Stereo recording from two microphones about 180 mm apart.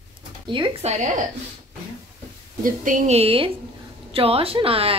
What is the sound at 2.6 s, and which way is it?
A woman's voice, 45° right (ahead or behind).